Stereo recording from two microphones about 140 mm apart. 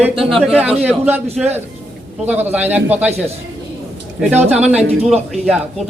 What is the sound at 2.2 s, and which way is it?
Speech, 15° right (ahead or behind).